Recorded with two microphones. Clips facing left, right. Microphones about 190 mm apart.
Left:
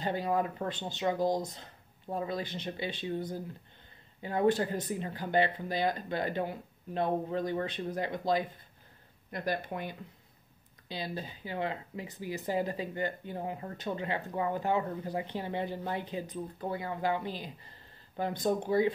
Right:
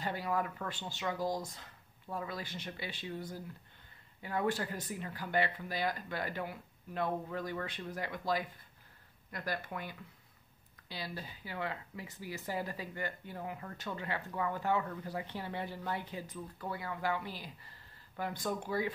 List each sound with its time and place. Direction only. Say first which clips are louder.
0.0 s speech: left 5 dB; 20° left (ahead or behind)